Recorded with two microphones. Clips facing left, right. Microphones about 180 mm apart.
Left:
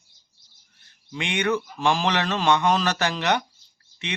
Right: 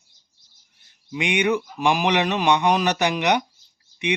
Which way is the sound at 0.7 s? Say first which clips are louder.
Right 4 dB; 15° right (ahead or behind).